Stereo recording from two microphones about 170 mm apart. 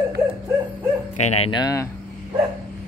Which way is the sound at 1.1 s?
40° left (ahead or behind).